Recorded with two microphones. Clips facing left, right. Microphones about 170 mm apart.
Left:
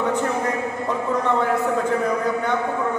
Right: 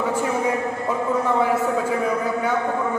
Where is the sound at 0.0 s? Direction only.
10° right (ahead or behind).